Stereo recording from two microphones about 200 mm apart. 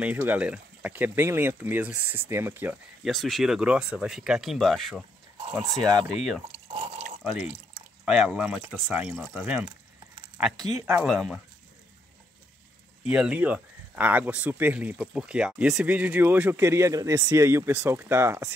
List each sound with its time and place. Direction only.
0.0 s speech: 10° right (ahead or behind)
5.5 s speech: 15° right (ahead or behind)
6.4 s a sound: 30° right (ahead or behind)
7.2 s speech: 5° right (ahead or behind)
11.1 s speech: 5° right (ahead or behind)
13.1 s speech: 5° right (ahead or behind)